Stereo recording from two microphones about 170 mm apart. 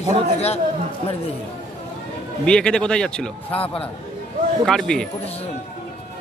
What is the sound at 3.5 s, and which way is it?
Speech, 35° left (ahead or behind).